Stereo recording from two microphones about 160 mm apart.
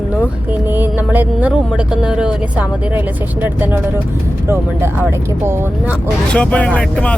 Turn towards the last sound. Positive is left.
turn(degrees=5)  # may be behind; listen again after turning